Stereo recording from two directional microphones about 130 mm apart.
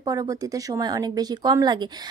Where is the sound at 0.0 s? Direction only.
25° right (ahead or behind).